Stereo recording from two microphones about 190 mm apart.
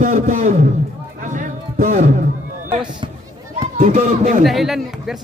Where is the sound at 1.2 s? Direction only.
45° right (ahead or behind).